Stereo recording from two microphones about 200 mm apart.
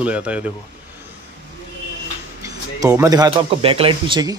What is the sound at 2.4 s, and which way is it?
Speech, 15° right (ahead or behind).